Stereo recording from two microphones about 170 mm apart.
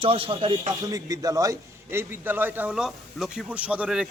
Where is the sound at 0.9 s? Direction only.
20° right (ahead or behind).